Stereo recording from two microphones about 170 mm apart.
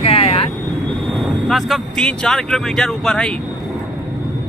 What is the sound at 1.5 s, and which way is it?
Speech, centre (ahead or behind).